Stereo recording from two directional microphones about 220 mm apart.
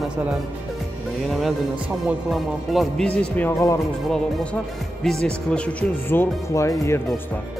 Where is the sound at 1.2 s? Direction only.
Centre (ahead or behind).